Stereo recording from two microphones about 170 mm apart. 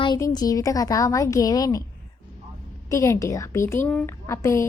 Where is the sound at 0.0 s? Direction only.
25° left (ahead or behind).